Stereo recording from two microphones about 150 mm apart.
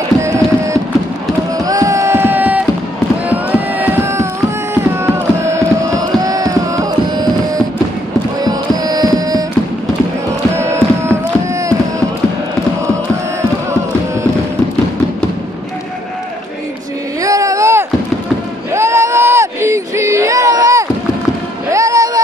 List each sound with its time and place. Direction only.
0.2 s a sound: 20° right (ahead or behind)
1.5 s music: 25° right (ahead or behind)
10.5 s music: 15° right (ahead or behind)
13.4 s music: 20° right (ahead or behind)
17.2 s a sound: 20° right (ahead or behind)
21.7 s music: 20° right (ahead or behind)